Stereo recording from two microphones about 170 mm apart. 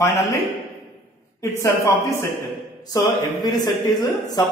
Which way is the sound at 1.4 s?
15° left (ahead or behind).